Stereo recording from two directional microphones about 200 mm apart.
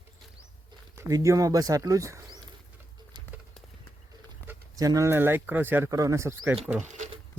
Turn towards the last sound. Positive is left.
turn(degrees=-35)  # may be behind; listen again after turning